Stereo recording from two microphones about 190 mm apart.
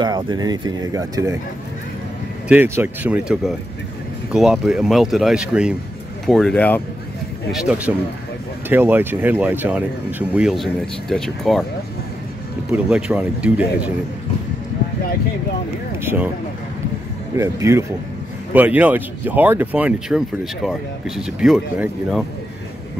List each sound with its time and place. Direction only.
0.0 s speech: 20° right (ahead or behind)
2.4 s speech: 10° right (ahead or behind); by 6.8 s 10° left (ahead or behind)
7.5 s speech: 5° right (ahead or behind)
12.7 s speech: 5° right (ahead or behind)
16.0 s speech: 10° right (ahead or behind)
17.4 s speech: 15° right (ahead or behind)